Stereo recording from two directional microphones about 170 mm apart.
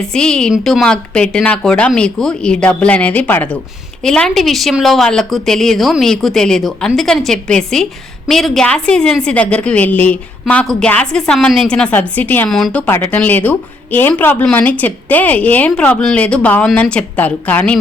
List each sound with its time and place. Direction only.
0.1 s a woman's voice: 5° left (ahead or behind)